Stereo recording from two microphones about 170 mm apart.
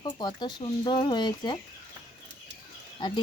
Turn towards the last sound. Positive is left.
turn(degrees=25)  # may be behind; listen again after turning